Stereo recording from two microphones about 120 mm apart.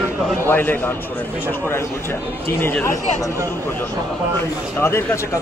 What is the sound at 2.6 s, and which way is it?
Speech, 15° left (ahead or behind).